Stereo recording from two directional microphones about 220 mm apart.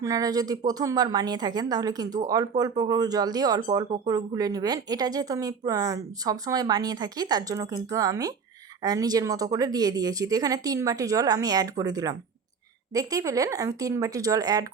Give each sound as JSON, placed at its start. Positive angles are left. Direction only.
{"t": 0.0, "sound": "a woman's voice", "side_deg": -15}